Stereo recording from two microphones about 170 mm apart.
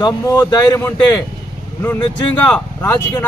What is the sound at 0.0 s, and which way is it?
A man's voice, 20° left (ahead or behind).